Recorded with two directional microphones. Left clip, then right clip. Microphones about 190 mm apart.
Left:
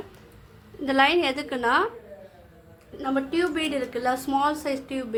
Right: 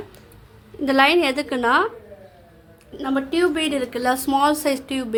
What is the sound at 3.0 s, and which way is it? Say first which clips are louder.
A woman's voice: right 4 dB; 35° right (ahead or behind).